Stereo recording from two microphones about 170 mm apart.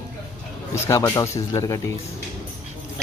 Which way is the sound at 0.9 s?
15° left (ahead or behind).